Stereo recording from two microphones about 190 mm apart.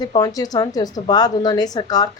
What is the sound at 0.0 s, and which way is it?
A woman's voice, 20° left (ahead or behind).